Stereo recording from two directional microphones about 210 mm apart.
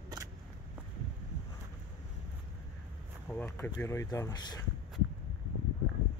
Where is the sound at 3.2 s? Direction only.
10° left (ahead or behind).